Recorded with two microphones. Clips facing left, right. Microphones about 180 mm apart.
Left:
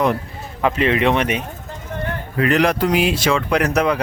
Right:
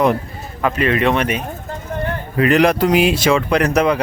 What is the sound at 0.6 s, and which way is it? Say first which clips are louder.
Speech: even; 20° left (ahead or behind).